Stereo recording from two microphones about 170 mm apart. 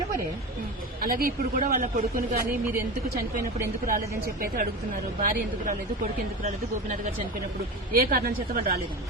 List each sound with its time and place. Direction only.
1.0 s a man's voice: 55° right (ahead or behind)
3.8 s a man's voice: 55° right (ahead or behind)
7.9 s a man's voice: 60° right (ahead or behind)